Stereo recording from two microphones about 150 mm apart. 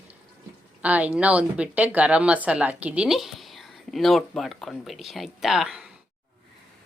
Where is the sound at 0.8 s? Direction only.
10° right (ahead or behind).